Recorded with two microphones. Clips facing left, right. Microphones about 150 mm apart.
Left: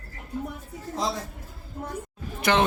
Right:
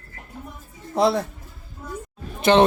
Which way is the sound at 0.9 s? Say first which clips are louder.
Right 10 dB; 65° right (ahead or behind).